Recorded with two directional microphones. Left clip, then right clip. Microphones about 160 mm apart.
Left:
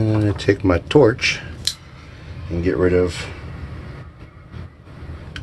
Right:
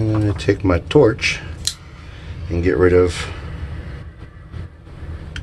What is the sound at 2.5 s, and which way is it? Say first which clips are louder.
Speech: right 3 dB; 30° right (ahead or behind).